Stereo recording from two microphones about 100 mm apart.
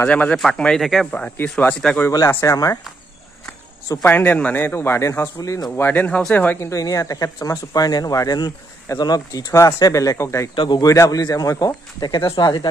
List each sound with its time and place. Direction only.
0.0 s speech: 15° left (ahead or behind)
1.1 s speech: 15° left (ahead or behind)
2.1 s speech: 35° left (ahead or behind)
4.0 s a man's voice: 20° left (ahead or behind); by 5.7 s 35° left (ahead or behind)
5.8 s speech: 20° left (ahead or behind)
6.6 s speech: 35° left (ahead or behind)
10.5 s a man's voice: 55° left (ahead or behind)
10.8 s speech: 35° left (ahead or behind)